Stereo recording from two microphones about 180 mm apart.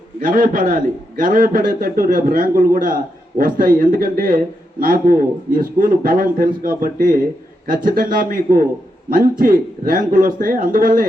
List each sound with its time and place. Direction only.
0.2 s a man's voice: 50° right (ahead or behind)